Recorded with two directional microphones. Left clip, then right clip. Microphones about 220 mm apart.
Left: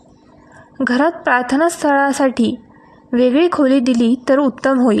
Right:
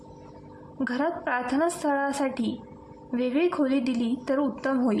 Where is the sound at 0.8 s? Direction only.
40° left (ahead or behind).